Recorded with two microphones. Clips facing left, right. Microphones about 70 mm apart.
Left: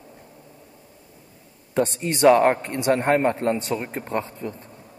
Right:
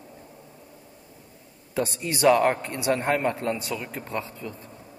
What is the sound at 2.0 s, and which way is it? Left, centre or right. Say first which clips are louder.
A man's voice: left 4 dB; left.